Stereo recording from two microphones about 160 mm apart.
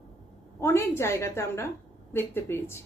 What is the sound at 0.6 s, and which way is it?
A woman's voice, 15° left (ahead or behind).